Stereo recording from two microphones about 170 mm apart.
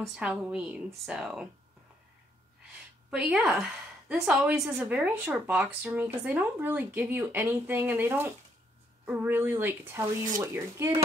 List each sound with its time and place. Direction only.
0.0 s speech: 5° right (ahead or behind)
3.1 s a woman's voice: 5° right (ahead or behind)